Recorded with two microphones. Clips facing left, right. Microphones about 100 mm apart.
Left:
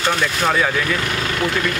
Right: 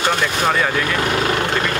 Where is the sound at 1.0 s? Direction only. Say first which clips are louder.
Right 3 dB; 35° right (ahead or behind).